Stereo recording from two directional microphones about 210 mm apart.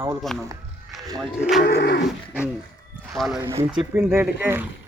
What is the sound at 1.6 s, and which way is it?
Livestock, 50° left (ahead or behind).